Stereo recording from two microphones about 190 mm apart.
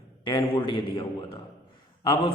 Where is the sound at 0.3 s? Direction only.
25° left (ahead or behind).